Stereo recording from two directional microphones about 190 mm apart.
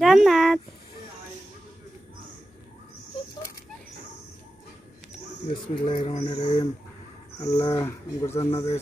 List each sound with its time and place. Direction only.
0.0 s a sound: centre (ahead or behind)
5.5 s speech: 25° left (ahead or behind)
7.3 s speech: 15° left (ahead or behind)